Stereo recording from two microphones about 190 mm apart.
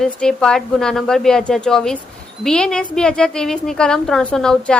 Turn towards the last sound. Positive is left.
turn(degrees=5)  # may be behind; listen again after turning